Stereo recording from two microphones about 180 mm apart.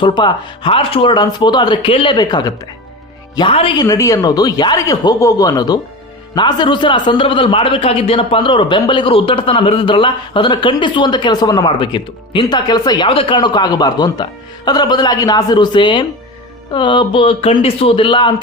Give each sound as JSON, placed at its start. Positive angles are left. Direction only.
{"t": 0.0, "sound": "a man's voice", "side_deg": 25}